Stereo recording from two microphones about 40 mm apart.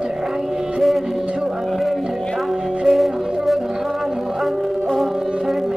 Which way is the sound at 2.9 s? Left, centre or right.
Centre.